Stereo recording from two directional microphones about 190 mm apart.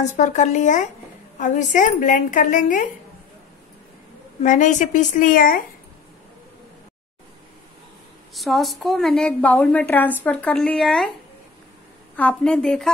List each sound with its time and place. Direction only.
0.0 s a woman's voice: 40° left (ahead or behind)
4.4 s a woman's voice: 40° left (ahead or behind)
8.4 s a woman's voice: centre (ahead or behind)
12.2 s a woman's voice: 5° left (ahead or behind)